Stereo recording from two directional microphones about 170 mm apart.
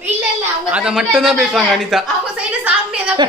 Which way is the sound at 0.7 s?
5° right (ahead or behind).